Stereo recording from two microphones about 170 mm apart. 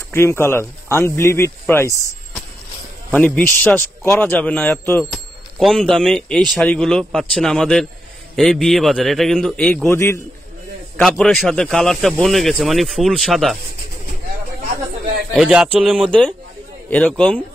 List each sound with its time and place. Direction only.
0.1 s a man's voice: 15° left (ahead or behind)
3.1 s a man's voice: 10° left (ahead or behind)
5.1 s speech: centre (ahead or behind)
9.8 s a man's voice: 15° left (ahead or behind)
11.0 s speech: 5° left (ahead or behind)
15.3 s speech: 5° right (ahead or behind)
16.9 s a man's voice: 5° left (ahead or behind)